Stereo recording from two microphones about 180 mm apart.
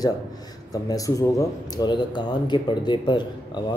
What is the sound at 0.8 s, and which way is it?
Speech, 20° left (ahead or behind).